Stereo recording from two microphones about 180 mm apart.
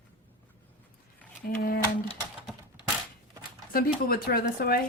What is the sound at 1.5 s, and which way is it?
Speech, 55° left (ahead or behind).